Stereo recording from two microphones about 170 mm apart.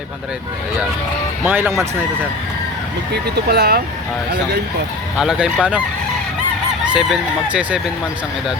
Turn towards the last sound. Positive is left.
turn(degrees=-5)  # may be behind; listen again after turning